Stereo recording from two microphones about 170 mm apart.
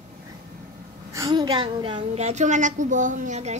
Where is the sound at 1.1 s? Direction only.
20° right (ahead or behind).